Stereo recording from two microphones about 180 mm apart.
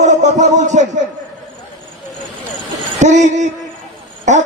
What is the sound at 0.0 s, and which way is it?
Speech, 40° right (ahead or behind).